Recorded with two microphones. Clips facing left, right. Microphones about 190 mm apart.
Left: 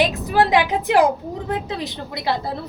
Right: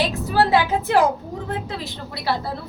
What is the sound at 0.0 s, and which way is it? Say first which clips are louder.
A woman's voice: left 2 dB; 15° left (ahead or behind).